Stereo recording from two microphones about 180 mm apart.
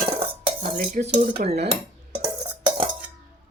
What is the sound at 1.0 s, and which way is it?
Speech, 50° right (ahead or behind).